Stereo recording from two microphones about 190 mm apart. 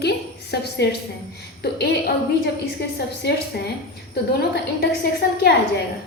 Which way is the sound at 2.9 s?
60° left (ahead or behind).